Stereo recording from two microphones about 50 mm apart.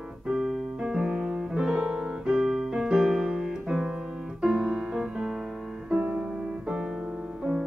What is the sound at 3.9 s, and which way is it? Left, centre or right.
Piano, centre.